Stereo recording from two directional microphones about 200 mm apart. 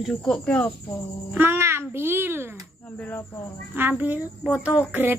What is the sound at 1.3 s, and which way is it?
A woman's voice, 10° right (ahead or behind).